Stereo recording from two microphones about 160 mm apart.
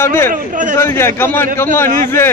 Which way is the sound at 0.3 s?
55° right (ahead or behind).